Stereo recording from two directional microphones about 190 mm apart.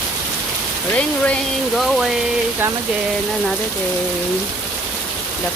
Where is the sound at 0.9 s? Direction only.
5° left (ahead or behind).